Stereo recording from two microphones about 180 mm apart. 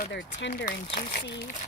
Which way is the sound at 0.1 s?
90° left.